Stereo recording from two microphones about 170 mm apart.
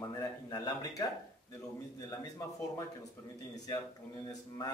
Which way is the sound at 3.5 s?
20° left (ahead or behind).